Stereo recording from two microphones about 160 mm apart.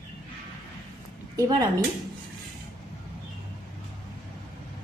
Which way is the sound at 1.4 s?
25° right (ahead or behind).